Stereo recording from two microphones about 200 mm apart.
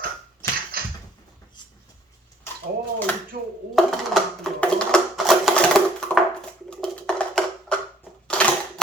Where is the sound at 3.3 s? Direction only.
40° right (ahead or behind).